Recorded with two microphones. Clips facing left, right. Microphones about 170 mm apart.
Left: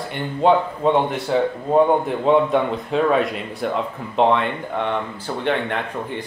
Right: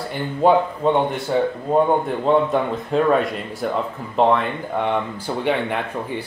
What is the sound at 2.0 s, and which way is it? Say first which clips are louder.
Speech: left 1 dB; centre (ahead or behind).